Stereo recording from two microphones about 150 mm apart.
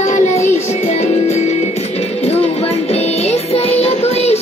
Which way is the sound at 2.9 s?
40° left (ahead or behind).